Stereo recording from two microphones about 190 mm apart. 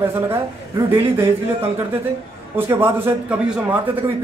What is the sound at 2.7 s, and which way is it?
Speech, 10° right (ahead or behind).